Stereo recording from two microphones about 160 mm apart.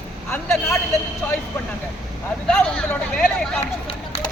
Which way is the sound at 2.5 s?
5° left (ahead or behind).